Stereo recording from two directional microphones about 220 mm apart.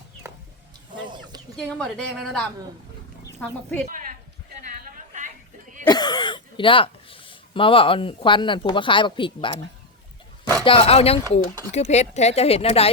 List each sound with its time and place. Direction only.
0.2 s chicken: 10° right (ahead or behind)
1.5 s a woman's voice: 5° left (ahead or behind)
4.9 s a sound: 35° right (ahead or behind)
5.9 s speech: 20° left (ahead or behind)
10.6 s speech: 25° left (ahead or behind)